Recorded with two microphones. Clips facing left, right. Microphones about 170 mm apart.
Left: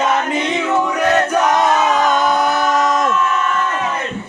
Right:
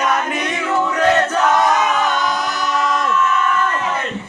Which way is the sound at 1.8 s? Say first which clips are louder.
Left 3 dB; 40° left (ahead or behind).